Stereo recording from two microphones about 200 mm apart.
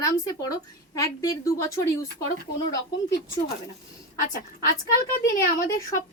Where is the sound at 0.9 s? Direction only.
15° left (ahead or behind).